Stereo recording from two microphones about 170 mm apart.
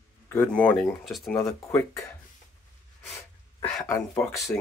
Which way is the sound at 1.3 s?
15° left (ahead or behind).